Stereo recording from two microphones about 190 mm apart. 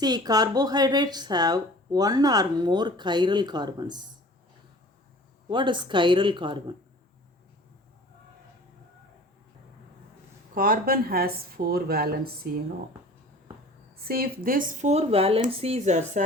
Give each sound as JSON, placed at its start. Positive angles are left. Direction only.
{"t": 0.0, "sound": "speech", "side_deg": -20}
{"t": 5.5, "sound": "speech", "side_deg": -25}
{"t": 10.5, "sound": "speech", "side_deg": -50}
{"t": 13.9, "sound": "speech", "side_deg": -55}